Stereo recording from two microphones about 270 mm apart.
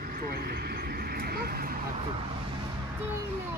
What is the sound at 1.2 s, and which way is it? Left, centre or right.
Speech, right.